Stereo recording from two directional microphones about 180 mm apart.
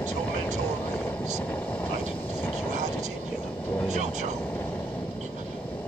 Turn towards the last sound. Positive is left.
turn(degrees=-40)  # may be behind; listen again after turning